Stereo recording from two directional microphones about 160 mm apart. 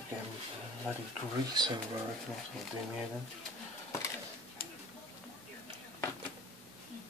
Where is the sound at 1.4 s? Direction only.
25° right (ahead or behind).